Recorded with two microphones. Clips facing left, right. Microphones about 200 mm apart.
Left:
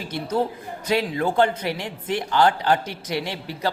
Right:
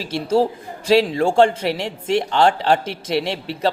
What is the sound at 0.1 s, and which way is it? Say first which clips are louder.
Speech: right 6 dB; 30° right (ahead or behind).